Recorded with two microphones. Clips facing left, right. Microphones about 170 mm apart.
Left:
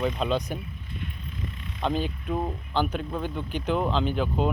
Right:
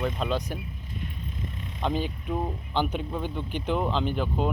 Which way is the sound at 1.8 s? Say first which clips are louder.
Left 1 dB; 10° right (ahead or behind).